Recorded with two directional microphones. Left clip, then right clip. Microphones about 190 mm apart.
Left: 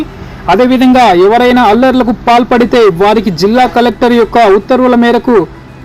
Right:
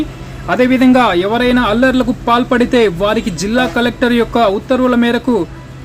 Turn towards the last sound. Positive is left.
turn(degrees=20)  # may be behind; listen again after turning